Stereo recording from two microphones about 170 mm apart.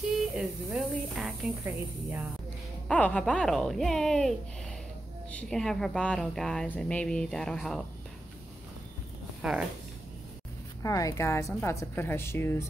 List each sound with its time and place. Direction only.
0.1 s speech: centre (ahead or behind)
1.6 s speech: 15° right (ahead or behind)
2.9 s speech: 5° left (ahead or behind)
9.4 s speech: 5° right (ahead or behind)
10.8 s a woman's voice: 20° left (ahead or behind)